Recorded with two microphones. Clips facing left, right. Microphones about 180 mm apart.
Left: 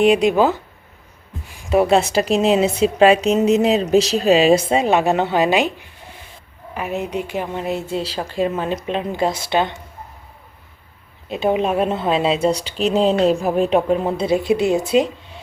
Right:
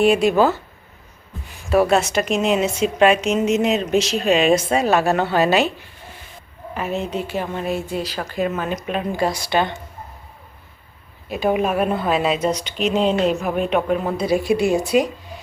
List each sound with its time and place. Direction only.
0.0 s speech: 20° left (ahead or behind)
1.7 s speech: 20° left (ahead or behind)
2.0 s a woman's voice: 35° left (ahead or behind)
4.8 s speech: 20° left (ahead or behind)
6.7 s speech: 15° left (ahead or behind)
11.3 s speech: 25° left (ahead or behind)